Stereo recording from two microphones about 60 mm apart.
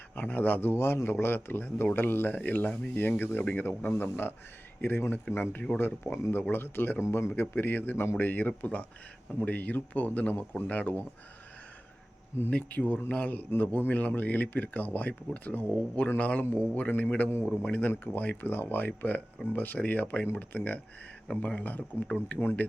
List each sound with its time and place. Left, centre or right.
0.2 s speech: left
12.5 s speech: left